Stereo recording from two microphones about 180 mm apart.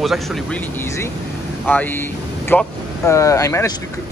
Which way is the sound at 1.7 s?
10° left (ahead or behind).